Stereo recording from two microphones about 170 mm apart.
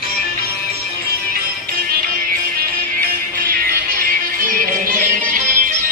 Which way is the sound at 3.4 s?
55° right (ahead or behind).